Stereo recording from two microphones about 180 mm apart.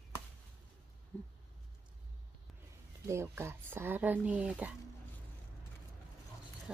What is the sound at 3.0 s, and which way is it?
Speech, 15° right (ahead or behind).